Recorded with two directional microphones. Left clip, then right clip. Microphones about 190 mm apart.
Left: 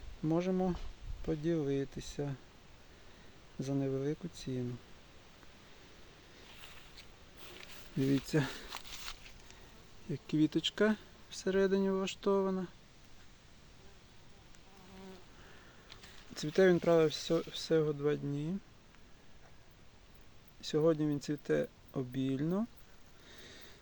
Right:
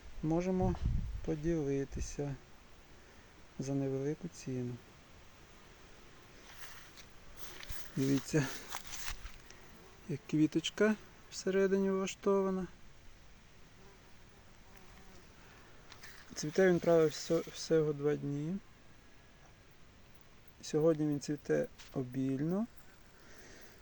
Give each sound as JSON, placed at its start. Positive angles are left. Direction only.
{"t": 0.3, "sound": "speech", "side_deg": 5}
{"t": 3.7, "sound": "speech", "side_deg": 5}
{"t": 8.3, "sound": "speech", "side_deg": 5}
{"t": 10.1, "sound": "speech", "side_deg": 0}
{"t": 16.5, "sound": "speech", "side_deg": 10}
{"t": 17.1, "sound": "speech", "side_deg": 20}
{"t": 17.5, "sound": "speech", "side_deg": 0}
{"t": 20.6, "sound": "speech", "side_deg": 0}
{"t": 23.4, "sound": "a sound", "side_deg": 5}